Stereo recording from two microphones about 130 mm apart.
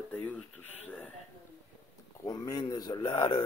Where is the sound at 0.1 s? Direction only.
10° left (ahead or behind).